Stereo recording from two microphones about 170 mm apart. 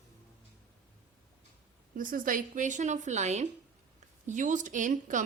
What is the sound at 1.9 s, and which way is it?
Speech, 55° right (ahead or behind).